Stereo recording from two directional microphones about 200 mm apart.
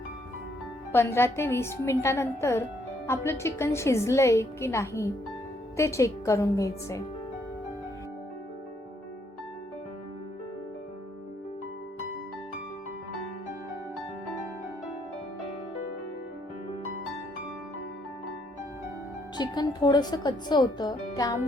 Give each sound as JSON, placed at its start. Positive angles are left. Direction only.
{"t": 0.9, "sound": "a woman's voice", "side_deg": 10}
{"t": 19.4, "sound": "speech", "side_deg": 20}